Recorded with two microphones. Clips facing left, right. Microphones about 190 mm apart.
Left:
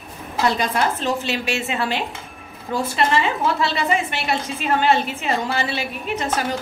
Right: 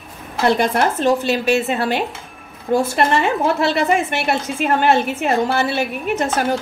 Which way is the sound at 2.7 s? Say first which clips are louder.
Right 4 dB; 50° right (ahead or behind).